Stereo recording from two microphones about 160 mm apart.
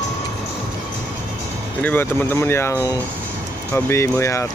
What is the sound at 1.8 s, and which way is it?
Speech, 10° left (ahead or behind).